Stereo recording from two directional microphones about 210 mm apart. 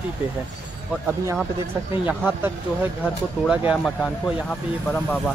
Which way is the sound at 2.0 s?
5° right (ahead or behind).